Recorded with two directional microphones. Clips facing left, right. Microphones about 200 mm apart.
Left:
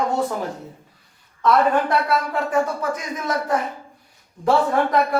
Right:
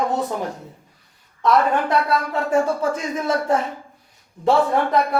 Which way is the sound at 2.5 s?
25° right (ahead or behind).